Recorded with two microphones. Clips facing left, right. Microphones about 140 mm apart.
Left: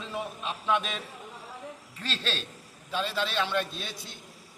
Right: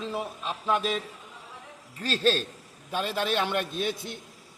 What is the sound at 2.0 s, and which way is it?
A man's voice, 40° right (ahead or behind).